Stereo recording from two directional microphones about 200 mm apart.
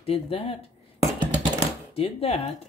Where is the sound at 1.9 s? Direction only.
30° left (ahead or behind).